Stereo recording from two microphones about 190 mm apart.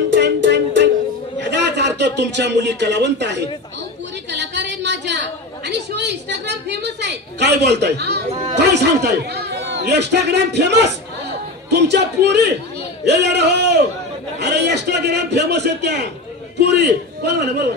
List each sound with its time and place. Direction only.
0.1 s music: 65° right (ahead or behind)
1.4 s a man's voice: 65° right (ahead or behind)
4.3 s a sound: 65° right (ahead or behind)
5.7 s a woman's voice: 60° right (ahead or behind)
8.3 s speech: 35° right (ahead or behind)
8.5 s a woman's voice: 60° right (ahead or behind)